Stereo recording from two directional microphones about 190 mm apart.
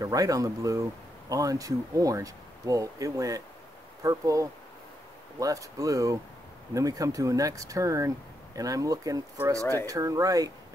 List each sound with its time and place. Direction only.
0.0 s speech: 20° right (ahead or behind)
9.6 s speech: 15° left (ahead or behind)
9.8 s speech: 15° right (ahead or behind)